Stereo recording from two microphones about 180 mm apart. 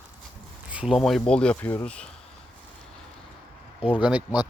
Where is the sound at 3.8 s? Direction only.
30° left (ahead or behind).